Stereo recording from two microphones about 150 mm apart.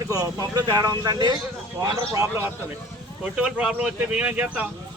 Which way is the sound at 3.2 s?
5° right (ahead or behind).